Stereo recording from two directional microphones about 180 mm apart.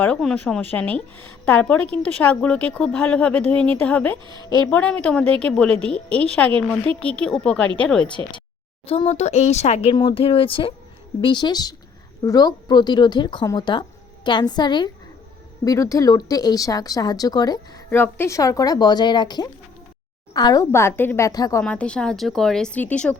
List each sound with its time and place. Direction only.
0.0 s speech: 5° left (ahead or behind)
8.9 s a woman's voice: 35° left (ahead or behind); by 21.6 s 20° left (ahead or behind)
21.6 s speech: 5° left (ahead or behind)